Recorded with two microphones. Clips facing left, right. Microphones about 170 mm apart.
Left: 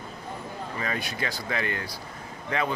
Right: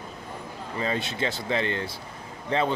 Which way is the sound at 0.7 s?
25° right (ahead or behind).